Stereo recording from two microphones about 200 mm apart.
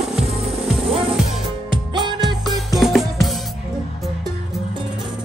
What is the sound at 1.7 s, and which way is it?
Music, 25° right (ahead or behind).